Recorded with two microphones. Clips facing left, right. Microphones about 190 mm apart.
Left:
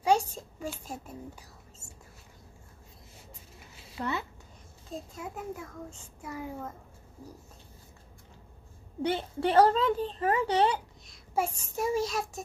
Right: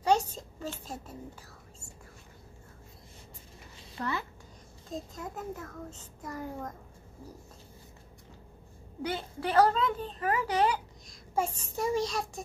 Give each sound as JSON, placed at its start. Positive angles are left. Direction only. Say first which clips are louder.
{"t": 0.0, "sound": "a woman's voice", "louder": "left 1 dB", "side_deg": 10}
{"t": 4.0, "sound": "speech", "louder": "left 1 dB", "side_deg": 25}
{"t": 4.9, "sound": "a child's voice", "louder": "even", "side_deg": 10}
{"t": 9.0, "sound": "speech", "louder": "left 5 dB", "side_deg": 30}
{"t": 11.1, "sound": "a child's voice", "louder": "left 1 dB", "side_deg": 10}